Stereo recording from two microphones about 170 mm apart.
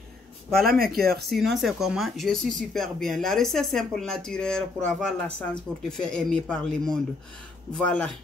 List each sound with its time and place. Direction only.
0.7 s speech: 60° right (ahead or behind)
0.9 s speech: centre (ahead or behind)